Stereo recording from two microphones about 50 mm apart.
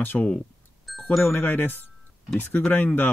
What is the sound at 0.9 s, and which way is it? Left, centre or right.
Chime, centre.